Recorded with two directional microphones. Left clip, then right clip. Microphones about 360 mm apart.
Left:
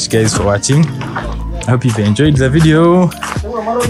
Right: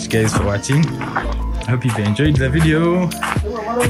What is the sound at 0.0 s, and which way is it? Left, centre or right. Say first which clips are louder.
Speech: left 5 dB; centre.